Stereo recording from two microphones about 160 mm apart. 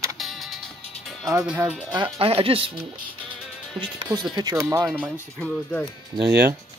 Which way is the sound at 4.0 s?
25° right (ahead or behind).